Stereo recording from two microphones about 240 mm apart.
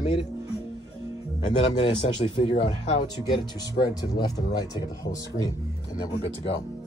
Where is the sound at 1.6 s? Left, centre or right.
Left.